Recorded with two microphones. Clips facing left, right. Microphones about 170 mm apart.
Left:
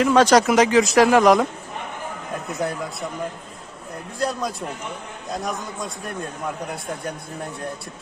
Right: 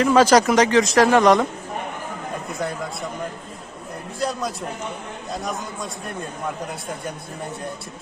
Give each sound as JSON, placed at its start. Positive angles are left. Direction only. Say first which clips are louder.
{"t": 0.0, "sound": "speech", "louder": "even", "side_deg": 0}
{"t": 4.2, "sound": "speech", "louder": "left 1 dB", "side_deg": 0}